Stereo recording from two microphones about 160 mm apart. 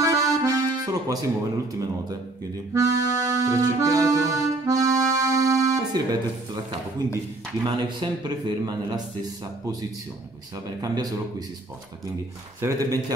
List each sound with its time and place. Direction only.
0.0 s accordion: 20° right (ahead or behind)
2.7 s music: 20° right (ahead or behind)
7.6 s a man's voice: 25° right (ahead or behind)
10.8 s a man's voice: 25° right (ahead or behind)
12.5 s a man's voice: 20° right (ahead or behind)